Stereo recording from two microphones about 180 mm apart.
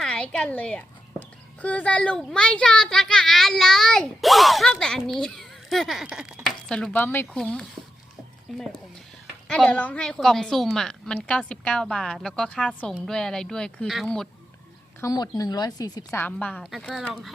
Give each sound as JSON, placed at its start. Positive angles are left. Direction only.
{"t": 0.0, "sound": "a woman's voice", "side_deg": 5}
{"t": 15.0, "sound": "speech", "side_deg": 20}
{"t": 16.0, "sound": "a child's voice", "side_deg": 10}